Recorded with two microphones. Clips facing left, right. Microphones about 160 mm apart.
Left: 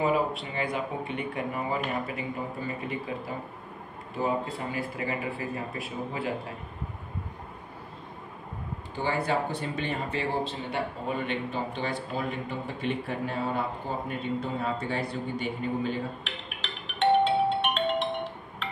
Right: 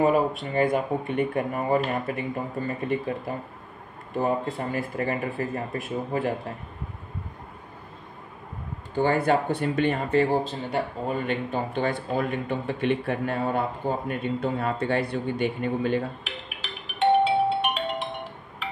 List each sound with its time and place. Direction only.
0.0 s speech: 50° right (ahead or behind)
4.2 s speech: 50° right (ahead or behind)
8.9 s a man's voice: 50° right (ahead or behind)
16.6 s music: 10° right (ahead or behind)